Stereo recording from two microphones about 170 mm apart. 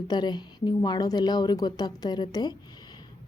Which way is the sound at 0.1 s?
25° left (ahead or behind).